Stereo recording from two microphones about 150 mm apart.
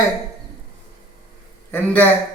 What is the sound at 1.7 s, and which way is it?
Speech, 10° left (ahead or behind).